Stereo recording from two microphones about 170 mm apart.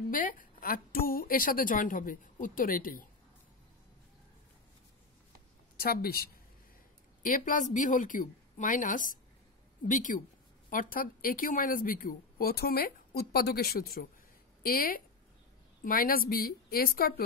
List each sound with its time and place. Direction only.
0.1 s a woman's voice: 55° left (ahead or behind)
5.8 s a woman's voice: 65° left (ahead or behind)
7.2 s a woman's voice: 50° left (ahead or behind)